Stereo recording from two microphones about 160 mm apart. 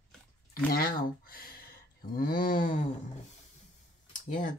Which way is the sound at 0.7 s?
70° left (ahead or behind).